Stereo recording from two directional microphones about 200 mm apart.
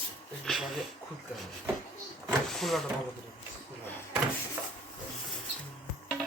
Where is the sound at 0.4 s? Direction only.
Centre (ahead or behind).